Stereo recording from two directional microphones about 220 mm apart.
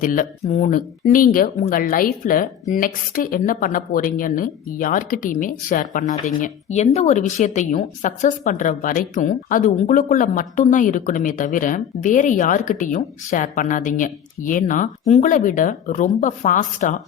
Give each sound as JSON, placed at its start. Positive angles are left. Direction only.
{"t": 0.0, "sound": "a woman's voice", "side_deg": 40}